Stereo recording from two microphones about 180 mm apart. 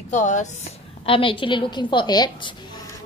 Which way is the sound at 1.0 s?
30° left (ahead or behind).